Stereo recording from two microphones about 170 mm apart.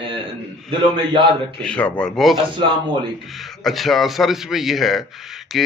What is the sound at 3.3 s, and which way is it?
A man's voice, centre (ahead or behind).